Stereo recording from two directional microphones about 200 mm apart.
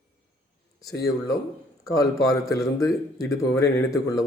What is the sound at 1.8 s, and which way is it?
Speech, 15° left (ahead or behind).